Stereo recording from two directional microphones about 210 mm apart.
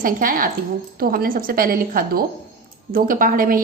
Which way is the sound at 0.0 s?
40° right (ahead or behind).